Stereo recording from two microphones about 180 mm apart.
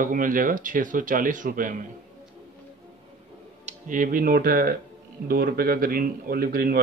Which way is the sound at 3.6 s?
45° right (ahead or behind).